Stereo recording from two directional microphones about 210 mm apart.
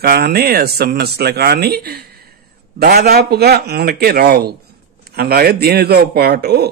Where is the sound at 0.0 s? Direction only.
45° right (ahead or behind).